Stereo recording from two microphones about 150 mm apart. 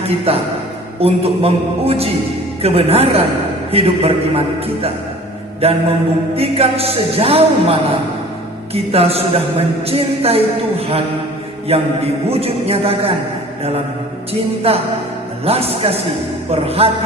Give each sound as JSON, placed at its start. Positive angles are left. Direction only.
{"t": 0.3, "sound": "speech", "side_deg": -40}
{"t": 11.7, "sound": "mantra", "side_deg": -40}
{"t": 12.3, "sound": "speech", "side_deg": -40}
{"t": 14.7, "sound": "speech", "side_deg": -40}